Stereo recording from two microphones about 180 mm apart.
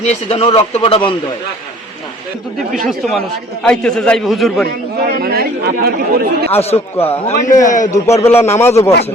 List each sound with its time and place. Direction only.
0.3 s a man's voice: 35° left (ahead or behind)
2.7 s a man's voice: centre (ahead or behind)
4.9 s speech: 60° right (ahead or behind)
6.6 s a man's voice: 35° left (ahead or behind)
8.0 s a man's voice: 15° left (ahead or behind)